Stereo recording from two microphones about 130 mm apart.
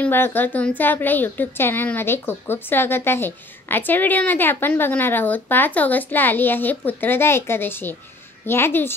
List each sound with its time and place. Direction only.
0.0 s a woman's voice: 15° left (ahead or behind)